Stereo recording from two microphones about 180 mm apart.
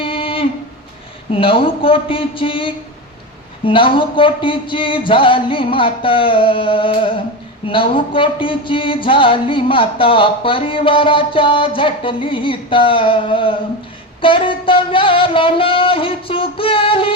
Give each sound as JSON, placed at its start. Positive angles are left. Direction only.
{"t": 0.0, "sound": "a sound", "side_deg": 30}
{"t": 1.3, "sound": "speech", "side_deg": 30}
{"t": 14.2, "sound": "music", "side_deg": 30}